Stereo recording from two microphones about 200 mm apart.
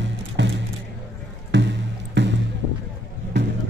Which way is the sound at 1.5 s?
60° right (ahead or behind).